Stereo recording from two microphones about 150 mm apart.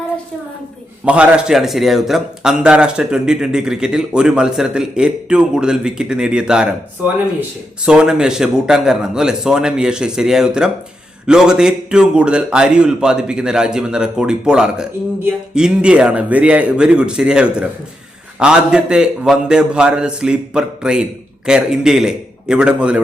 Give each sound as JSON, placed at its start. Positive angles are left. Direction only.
{"t": 1.0, "sound": "a man's voice", "side_deg": -10}